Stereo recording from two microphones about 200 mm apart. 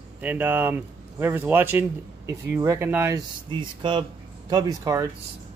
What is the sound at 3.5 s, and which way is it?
Speech, 25° right (ahead or behind).